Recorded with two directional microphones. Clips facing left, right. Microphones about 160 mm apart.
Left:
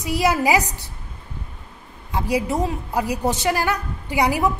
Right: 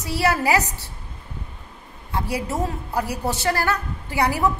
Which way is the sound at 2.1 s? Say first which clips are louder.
Left 4 dB; 15° left (ahead or behind).